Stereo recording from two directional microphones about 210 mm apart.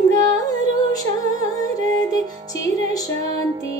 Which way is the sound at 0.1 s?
15° left (ahead or behind).